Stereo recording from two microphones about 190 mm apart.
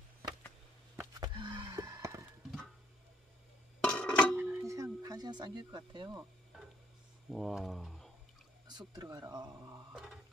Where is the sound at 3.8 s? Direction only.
5° left (ahead or behind).